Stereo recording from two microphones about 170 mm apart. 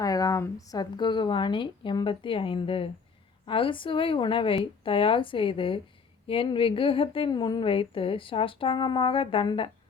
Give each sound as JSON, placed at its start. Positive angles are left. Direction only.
{"t": 0.0, "sound": "a woman's voice", "side_deg": 20}